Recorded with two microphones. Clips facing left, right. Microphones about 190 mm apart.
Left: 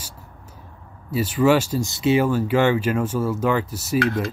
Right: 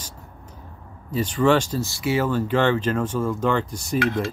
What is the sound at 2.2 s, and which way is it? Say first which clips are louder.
Speech: left 2 dB; 10° left (ahead or behind).